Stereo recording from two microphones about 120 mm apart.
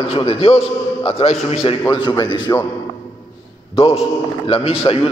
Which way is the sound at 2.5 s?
30° left (ahead or behind).